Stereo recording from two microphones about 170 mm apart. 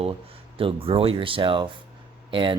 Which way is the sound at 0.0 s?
35° right (ahead or behind).